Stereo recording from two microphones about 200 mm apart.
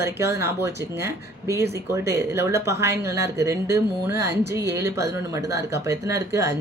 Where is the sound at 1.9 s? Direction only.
15° right (ahead or behind).